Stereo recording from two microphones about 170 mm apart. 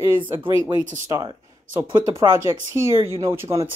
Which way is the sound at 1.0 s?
20° right (ahead or behind).